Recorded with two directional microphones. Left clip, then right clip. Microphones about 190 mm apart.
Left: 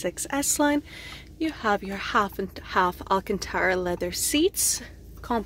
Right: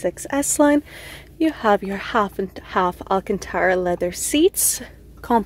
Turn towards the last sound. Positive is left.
turn(degrees=-25)  # may be behind; listen again after turning